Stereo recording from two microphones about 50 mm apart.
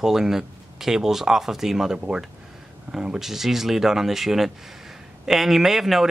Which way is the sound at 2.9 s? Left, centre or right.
Centre.